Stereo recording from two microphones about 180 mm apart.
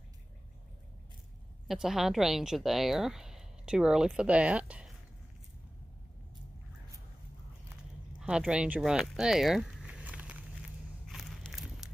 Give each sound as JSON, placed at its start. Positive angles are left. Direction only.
{"t": 1.7, "sound": "a woman's voice", "side_deg": 0}
{"t": 8.2, "sound": "speech", "side_deg": -5}
{"t": 11.1, "sound": "walk", "side_deg": 0}